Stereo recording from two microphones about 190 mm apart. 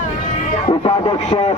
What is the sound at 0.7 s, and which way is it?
Speech, 25° left (ahead or behind).